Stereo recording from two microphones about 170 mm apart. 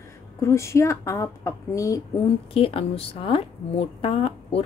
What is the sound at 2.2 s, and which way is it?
A woman's voice, 35° left (ahead or behind).